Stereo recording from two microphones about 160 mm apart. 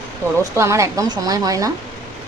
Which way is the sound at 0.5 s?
20° right (ahead or behind).